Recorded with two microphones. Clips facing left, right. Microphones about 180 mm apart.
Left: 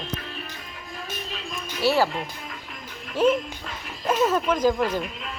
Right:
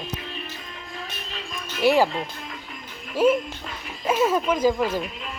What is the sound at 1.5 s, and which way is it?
Music, 10° left (ahead or behind).